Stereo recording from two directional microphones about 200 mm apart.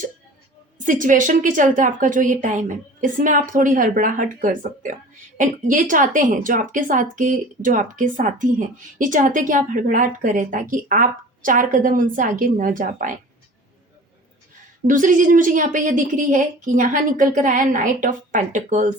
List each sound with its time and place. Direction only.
0.9 s a woman's voice: 40° right (ahead or behind)
14.8 s a woman's voice: 40° right (ahead or behind)